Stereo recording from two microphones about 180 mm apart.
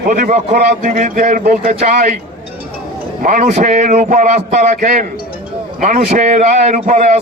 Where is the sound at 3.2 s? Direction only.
45° right (ahead or behind).